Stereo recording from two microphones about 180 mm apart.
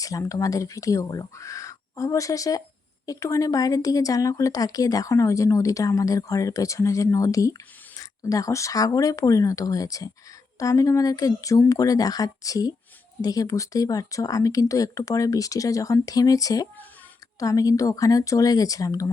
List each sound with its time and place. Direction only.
0.0 s speech: 20° left (ahead or behind)